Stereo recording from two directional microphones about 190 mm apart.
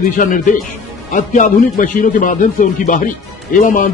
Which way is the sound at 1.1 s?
40° left (ahead or behind).